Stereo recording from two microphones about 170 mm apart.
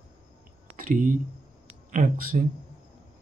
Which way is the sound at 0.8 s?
55° right (ahead or behind).